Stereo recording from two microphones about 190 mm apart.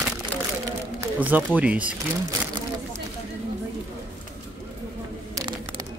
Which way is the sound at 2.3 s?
20° right (ahead or behind).